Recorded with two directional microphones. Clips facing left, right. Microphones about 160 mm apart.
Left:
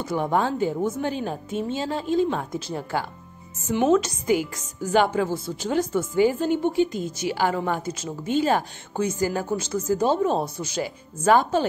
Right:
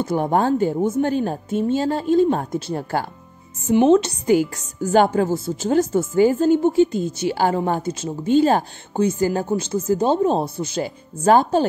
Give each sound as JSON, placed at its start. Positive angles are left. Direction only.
{"t": 0.0, "sound": "a woman's voice", "side_deg": -45}
{"t": 3.8, "sound": "speech", "side_deg": -30}